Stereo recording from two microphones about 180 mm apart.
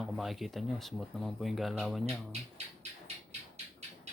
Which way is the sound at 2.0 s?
35° right (ahead or behind).